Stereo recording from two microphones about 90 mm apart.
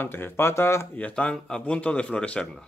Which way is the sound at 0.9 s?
15° left (ahead or behind).